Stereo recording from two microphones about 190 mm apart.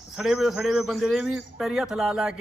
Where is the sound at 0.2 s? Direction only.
5° right (ahead or behind).